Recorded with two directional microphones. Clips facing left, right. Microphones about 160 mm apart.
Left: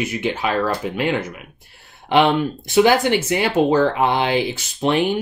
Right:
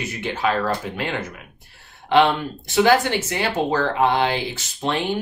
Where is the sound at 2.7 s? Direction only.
15° left (ahead or behind).